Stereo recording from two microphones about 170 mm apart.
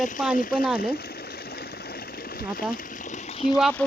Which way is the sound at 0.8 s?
65° left (ahead or behind).